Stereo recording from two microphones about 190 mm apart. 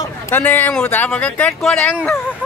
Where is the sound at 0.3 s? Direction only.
10° left (ahead or behind).